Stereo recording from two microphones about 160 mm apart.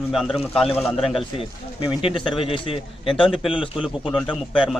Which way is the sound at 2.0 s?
35° left (ahead or behind).